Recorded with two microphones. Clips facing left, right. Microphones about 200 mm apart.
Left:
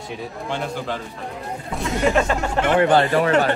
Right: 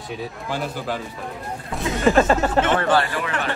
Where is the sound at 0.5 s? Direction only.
5° right (ahead or behind).